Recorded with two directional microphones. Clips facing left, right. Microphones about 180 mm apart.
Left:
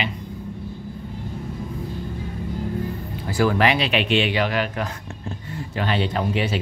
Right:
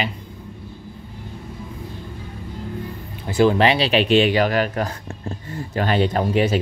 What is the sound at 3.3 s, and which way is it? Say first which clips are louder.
Speech: right 3 dB; 25° right (ahead or behind).